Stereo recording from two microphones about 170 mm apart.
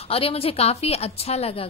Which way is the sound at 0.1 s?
35° left (ahead or behind).